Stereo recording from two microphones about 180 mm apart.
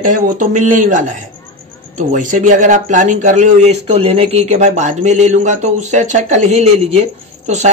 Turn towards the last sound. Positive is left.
turn(degrees=-35)  # may be behind; listen again after turning